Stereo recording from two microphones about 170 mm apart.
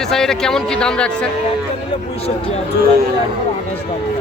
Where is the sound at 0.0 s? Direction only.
5° left (ahead or behind).